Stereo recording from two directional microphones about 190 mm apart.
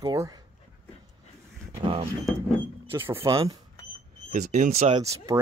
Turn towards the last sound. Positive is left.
turn(degrees=-15)  # may be behind; listen again after turning